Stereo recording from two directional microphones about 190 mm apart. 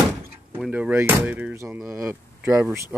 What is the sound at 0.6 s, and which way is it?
Speech, 5° right (ahead or behind).